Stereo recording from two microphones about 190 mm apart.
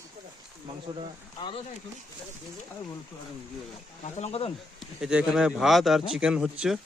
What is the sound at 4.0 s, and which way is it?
Speech, 35° left (ahead or behind).